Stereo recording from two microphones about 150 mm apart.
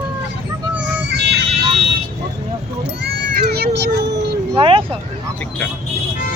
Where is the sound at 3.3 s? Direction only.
90° right.